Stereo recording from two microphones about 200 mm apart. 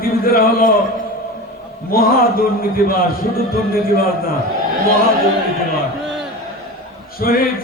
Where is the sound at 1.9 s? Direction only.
45° left (ahead or behind).